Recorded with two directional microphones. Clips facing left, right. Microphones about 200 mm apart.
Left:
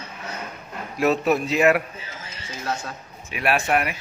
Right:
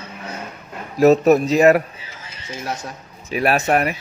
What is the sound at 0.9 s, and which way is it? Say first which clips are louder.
Speech: right 8 dB; 40° right (ahead or behind).